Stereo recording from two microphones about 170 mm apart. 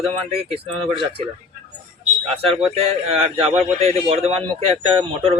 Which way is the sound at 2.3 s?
35° right (ahead or behind).